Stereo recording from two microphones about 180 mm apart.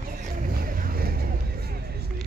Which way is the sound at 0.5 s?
55° right (ahead or behind).